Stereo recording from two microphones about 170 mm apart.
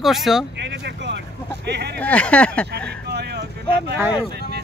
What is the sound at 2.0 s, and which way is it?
Speech, 10° left (ahead or behind).